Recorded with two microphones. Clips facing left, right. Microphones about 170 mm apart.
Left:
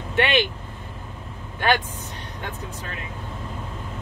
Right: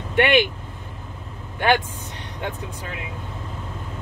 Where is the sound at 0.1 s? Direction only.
10° right (ahead or behind).